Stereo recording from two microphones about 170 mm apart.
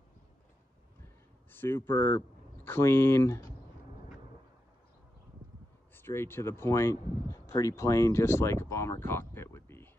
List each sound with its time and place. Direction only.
1.5 s speech: 15° left (ahead or behind)
5.9 s speech: 15° left (ahead or behind)